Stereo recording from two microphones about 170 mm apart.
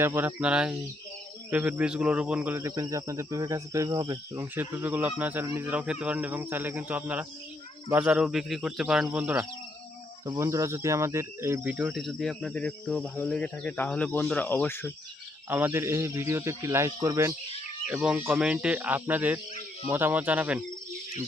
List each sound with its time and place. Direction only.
0.0 s speech: 15° right (ahead or behind)
7.9 s cricket: 10° right (ahead or behind)
9.0 s speech: 10° right (ahead or behind)
10.2 s cricket: 20° right (ahead or behind); by 14.9 s 10° left (ahead or behind)
15.4 s speech: 15° right (ahead or behind)
17.8 s speech: 5° right (ahead or behind)